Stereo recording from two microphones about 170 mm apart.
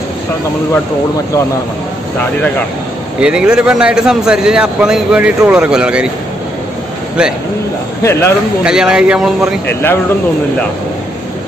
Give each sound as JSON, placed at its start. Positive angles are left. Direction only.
{"t": 3.2, "sound": "a man's voice", "side_deg": -5}
{"t": 8.0, "sound": "speech", "side_deg": 15}
{"t": 8.6, "sound": "a man's voice", "side_deg": -5}
{"t": 9.7, "sound": "speech", "side_deg": 10}